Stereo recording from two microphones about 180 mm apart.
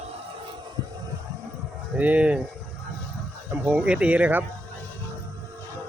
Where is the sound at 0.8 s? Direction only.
20° right (ahead or behind).